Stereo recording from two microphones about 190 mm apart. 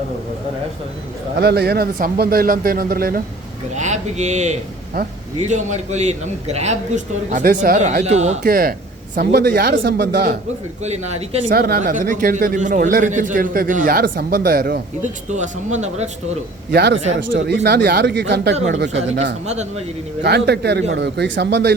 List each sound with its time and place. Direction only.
1.4 s speech: 55° right (ahead or behind)
3.8 s a man's voice: 40° right (ahead or behind)
9.1 s speech: 60° right (ahead or behind)
10.8 s a man's voice: 35° right (ahead or behind)
11.5 s speech: 55° right (ahead or behind)
15.3 s a man's voice: 35° right (ahead or behind)
16.7 s speech: 60° right (ahead or behind)
19.2 s a man's voice: 35° right (ahead or behind)
20.2 s speech: 60° right (ahead or behind)